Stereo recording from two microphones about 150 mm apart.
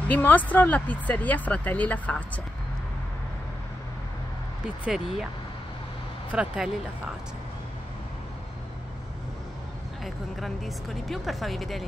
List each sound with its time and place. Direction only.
0.1 s speech: 10° left (ahead or behind)
4.8 s speech: 5° right (ahead or behind)
6.3 s speech: 5° right (ahead or behind)
10.0 s speech: centre (ahead or behind)